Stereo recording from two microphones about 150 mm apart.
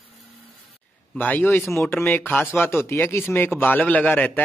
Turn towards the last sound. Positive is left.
turn(degrees=10)  # may be behind; listen again after turning